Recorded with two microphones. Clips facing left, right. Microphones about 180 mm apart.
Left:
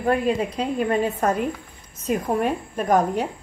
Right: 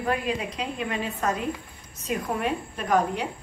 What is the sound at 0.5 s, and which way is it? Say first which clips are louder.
A woman's voice: left 8 dB; 40° left (ahead or behind).